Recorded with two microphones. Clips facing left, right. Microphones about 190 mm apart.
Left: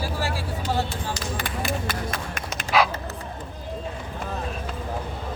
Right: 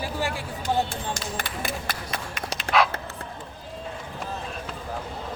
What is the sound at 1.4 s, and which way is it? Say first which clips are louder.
Run: left 3 dB; 50° left (ahead or behind).